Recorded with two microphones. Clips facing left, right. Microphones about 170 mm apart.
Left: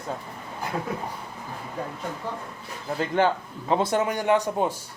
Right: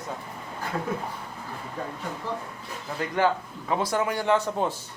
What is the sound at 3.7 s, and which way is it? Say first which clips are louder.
Speech: left 3 dB; 25° left (ahead or behind).